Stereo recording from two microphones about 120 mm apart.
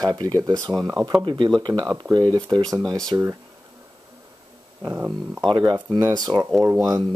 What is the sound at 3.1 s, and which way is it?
Speech, 25° right (ahead or behind).